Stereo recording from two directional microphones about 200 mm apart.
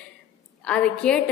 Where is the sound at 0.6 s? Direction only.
5° left (ahead or behind).